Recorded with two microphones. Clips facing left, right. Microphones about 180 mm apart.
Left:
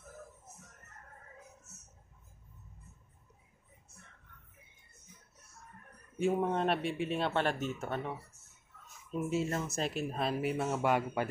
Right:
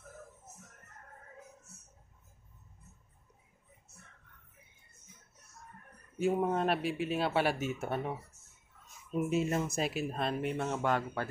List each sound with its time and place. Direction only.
6.1 s speech: 5° right (ahead or behind)
9.8 s speech: 5° right (ahead or behind); by 11.2 s 10° left (ahead or behind)